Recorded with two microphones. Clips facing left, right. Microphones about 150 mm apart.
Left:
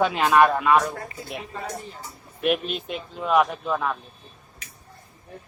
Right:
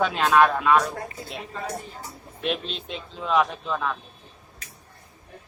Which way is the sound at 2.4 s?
10° left (ahead or behind).